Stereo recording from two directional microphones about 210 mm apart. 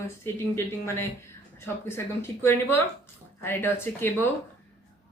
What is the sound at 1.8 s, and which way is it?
Speech, 10° left (ahead or behind).